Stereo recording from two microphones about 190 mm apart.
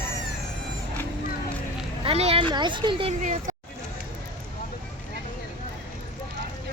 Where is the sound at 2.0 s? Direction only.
30° right (ahead or behind).